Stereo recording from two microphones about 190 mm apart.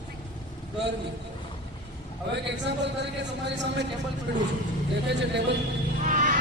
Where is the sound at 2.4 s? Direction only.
65° right (ahead or behind).